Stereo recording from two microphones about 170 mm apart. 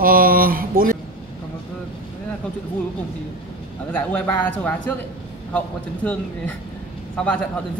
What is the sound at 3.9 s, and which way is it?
A man's voice, 10° left (ahead or behind).